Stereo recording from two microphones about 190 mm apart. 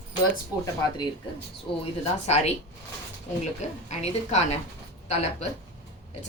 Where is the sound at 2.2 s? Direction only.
35° left (ahead or behind).